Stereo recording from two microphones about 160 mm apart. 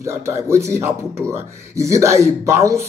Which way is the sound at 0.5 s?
15° right (ahead or behind).